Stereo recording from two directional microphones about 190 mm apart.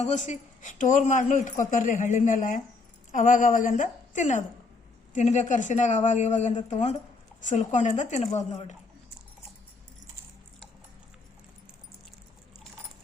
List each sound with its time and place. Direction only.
0.0 s a woman's voice: 35° left (ahead or behind)